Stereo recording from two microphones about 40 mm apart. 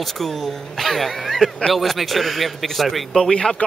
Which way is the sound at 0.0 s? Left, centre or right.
Centre.